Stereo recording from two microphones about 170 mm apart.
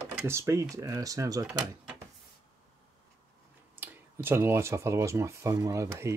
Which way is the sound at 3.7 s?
10° right (ahead or behind).